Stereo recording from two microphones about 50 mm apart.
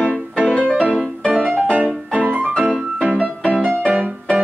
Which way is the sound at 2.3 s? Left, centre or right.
Right.